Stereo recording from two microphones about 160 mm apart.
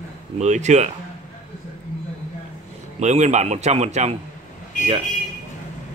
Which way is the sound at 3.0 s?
45° right (ahead or behind).